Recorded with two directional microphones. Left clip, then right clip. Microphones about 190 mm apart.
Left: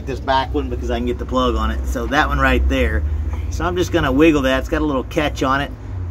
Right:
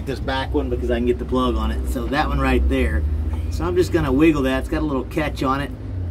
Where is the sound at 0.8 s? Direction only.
10° left (ahead or behind).